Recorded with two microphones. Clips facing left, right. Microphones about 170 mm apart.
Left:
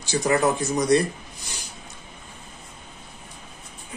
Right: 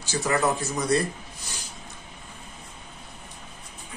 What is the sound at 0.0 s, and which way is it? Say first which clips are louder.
Speech: left 4 dB; 15° left (ahead or behind).